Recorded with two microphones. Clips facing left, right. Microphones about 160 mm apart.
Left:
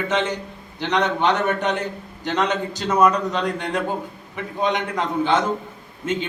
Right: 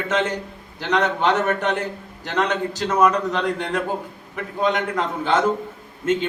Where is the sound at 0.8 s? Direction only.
5° right (ahead or behind).